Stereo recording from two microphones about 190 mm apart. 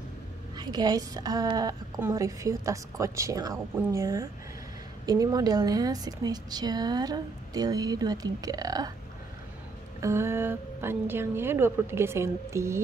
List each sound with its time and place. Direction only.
0.6 s a woman's voice: 20° right (ahead or behind)
9.9 s a woman's voice: 15° right (ahead or behind)